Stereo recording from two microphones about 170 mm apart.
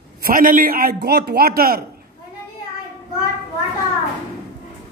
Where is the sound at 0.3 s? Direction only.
55° right (ahead or behind).